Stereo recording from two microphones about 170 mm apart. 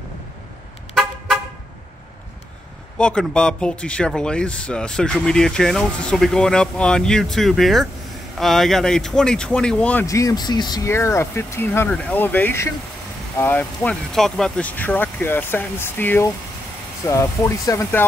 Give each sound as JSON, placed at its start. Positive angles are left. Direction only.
{"t": 0.9, "sound": "vehicle", "side_deg": 0}
{"t": 3.0, "sound": "speech", "side_deg": 5}
{"t": 10.0, "sound": "speech", "side_deg": 20}